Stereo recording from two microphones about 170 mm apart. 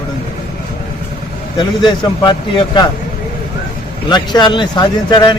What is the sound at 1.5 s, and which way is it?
Speech, 25° left (ahead or behind).